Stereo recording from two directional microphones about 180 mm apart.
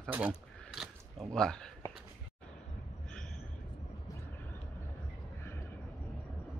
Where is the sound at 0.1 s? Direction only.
5° right (ahead or behind).